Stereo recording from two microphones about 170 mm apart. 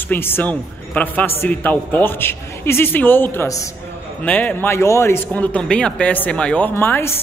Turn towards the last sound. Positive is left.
turn(degrees=10)  # may be behind; listen again after turning